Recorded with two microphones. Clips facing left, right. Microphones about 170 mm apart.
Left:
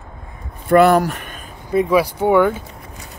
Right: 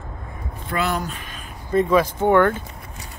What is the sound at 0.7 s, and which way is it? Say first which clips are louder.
Speech: left 12 dB; 60° left (ahead or behind).